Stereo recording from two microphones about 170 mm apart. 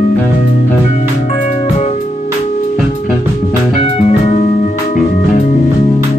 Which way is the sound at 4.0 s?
40° left (ahead or behind).